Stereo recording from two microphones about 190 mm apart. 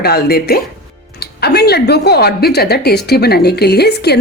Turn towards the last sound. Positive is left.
turn(degrees=60)  # may be behind; listen again after turning